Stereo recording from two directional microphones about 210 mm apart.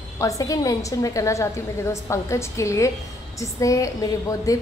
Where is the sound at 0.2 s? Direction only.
15° left (ahead or behind).